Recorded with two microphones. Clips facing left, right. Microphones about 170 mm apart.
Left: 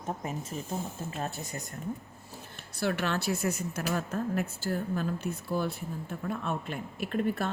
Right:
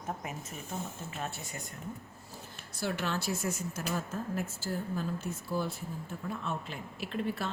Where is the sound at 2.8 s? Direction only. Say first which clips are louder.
Left 4 dB; 65° left (ahead or behind).